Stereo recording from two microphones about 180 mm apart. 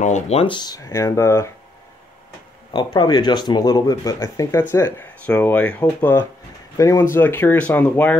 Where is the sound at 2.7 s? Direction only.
25° left (ahead or behind).